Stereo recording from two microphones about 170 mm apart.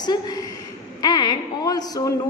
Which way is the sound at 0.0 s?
25° left (ahead or behind).